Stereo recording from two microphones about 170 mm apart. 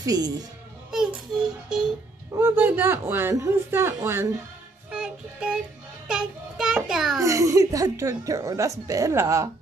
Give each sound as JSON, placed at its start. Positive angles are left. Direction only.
{"t": 0.0, "sound": "a woman's voice", "side_deg": -20}
{"t": 0.9, "sound": "music", "side_deg": -5}
{"t": 2.3, "sound": "speech", "side_deg": -10}
{"t": 4.9, "sound": "child singing", "side_deg": -5}
{"t": 6.0, "sound": "a child's voice", "side_deg": -5}
{"t": 7.2, "sound": "speech", "side_deg": -20}